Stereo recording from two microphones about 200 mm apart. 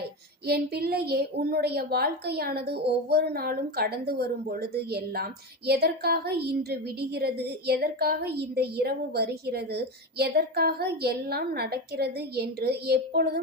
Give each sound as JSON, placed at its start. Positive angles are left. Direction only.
{"t": 0.4, "sound": "a woman's voice", "side_deg": -50}